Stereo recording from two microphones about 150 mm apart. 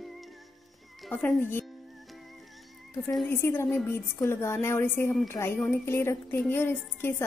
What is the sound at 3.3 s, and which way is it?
A woman's voice, 15° left (ahead or behind).